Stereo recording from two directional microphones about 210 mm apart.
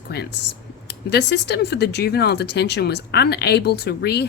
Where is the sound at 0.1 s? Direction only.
50° left (ahead or behind).